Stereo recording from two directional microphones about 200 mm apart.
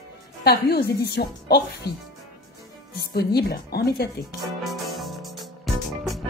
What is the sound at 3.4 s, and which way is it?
Speech, 50° left (ahead or behind).